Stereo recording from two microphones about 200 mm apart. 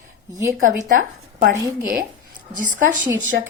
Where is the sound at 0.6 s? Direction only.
40° right (ahead or behind).